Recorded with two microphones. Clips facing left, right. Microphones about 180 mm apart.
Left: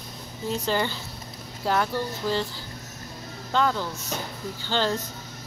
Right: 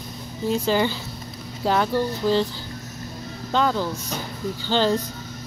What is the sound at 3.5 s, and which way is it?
Speech, 15° right (ahead or behind).